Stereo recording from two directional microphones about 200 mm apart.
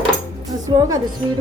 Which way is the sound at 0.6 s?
20° right (ahead or behind).